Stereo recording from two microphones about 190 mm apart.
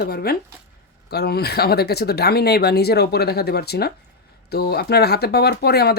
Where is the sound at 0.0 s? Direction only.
55° left (ahead or behind).